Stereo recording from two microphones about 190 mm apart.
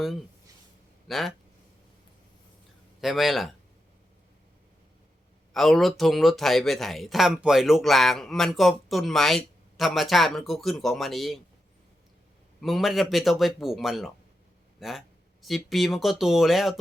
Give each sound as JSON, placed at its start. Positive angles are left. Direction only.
{"t": 1.0, "sound": "speech", "side_deg": 0}
{"t": 3.0, "sound": "speech", "side_deg": 0}
{"t": 5.5, "sound": "speech", "side_deg": 0}
{"t": 12.6, "sound": "speech", "side_deg": 0}